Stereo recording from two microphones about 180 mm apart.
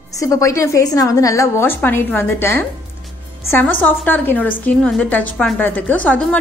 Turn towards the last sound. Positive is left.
turn(degrees=10)  # may be behind; listen again after turning